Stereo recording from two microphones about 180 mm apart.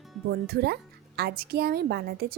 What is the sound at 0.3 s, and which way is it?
Speech, 60° right (ahead or behind).